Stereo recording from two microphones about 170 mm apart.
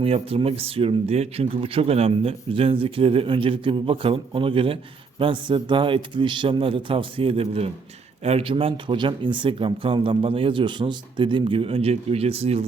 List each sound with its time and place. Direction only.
0.0 s speech: 35° right (ahead or behind)